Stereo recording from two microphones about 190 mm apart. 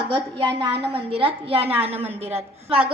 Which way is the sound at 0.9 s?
30° right (ahead or behind).